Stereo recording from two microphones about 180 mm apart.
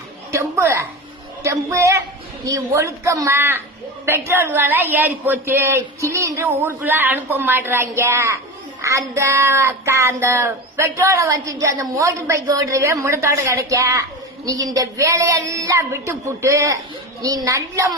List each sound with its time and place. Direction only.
0.3 s a woman's voice: 15° right (ahead or behind)
1.5 s a sound: 15° right (ahead or behind)
17.2 s a woman's voice: 20° right (ahead or behind)